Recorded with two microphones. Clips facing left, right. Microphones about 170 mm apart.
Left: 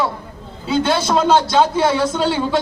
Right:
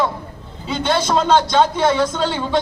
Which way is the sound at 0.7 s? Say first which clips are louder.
Left 2 dB; 5° left (ahead or behind).